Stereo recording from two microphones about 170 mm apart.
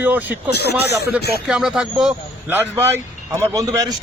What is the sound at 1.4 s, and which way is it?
A man's voice, 5° right (ahead or behind).